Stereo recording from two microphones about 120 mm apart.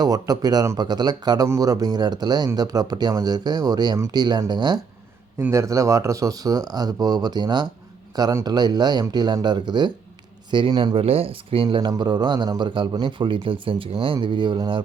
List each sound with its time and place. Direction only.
0.0 s speech: 35° right (ahead or behind)
5.5 s speech: 25° right (ahead or behind)
10.9 s speech: 55° right (ahead or behind)